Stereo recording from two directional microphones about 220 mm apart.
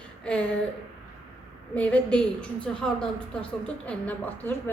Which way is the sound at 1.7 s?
5° left (ahead or behind).